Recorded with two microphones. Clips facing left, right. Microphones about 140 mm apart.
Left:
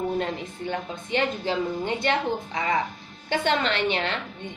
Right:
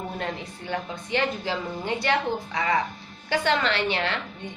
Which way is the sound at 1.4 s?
20° left (ahead or behind).